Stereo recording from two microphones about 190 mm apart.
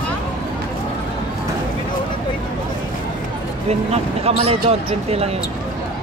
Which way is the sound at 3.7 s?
35° right (ahead or behind).